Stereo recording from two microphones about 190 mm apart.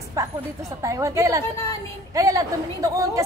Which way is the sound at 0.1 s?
15° right (ahead or behind).